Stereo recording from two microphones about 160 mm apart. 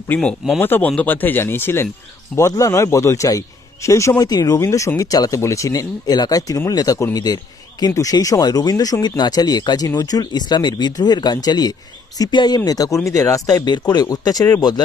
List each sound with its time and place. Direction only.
0.1 s speech: 5° left (ahead or behind); by 14.8 s 25° left (ahead or behind)